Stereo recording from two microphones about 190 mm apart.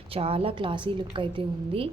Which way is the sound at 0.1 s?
30° right (ahead or behind).